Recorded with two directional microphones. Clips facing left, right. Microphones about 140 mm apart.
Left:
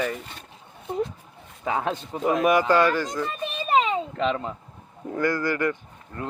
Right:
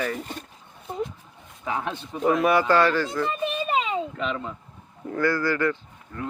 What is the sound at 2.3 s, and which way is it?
Speech, 15° left (ahead or behind).